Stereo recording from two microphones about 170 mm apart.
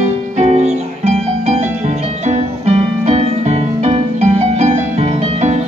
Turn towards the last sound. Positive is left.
turn(degrees=-35)  # may be behind; listen again after turning